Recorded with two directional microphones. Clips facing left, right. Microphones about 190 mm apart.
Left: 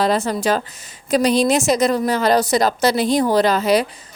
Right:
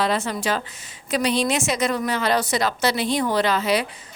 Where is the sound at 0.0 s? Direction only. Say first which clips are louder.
Left 5 dB; 40° left (ahead or behind).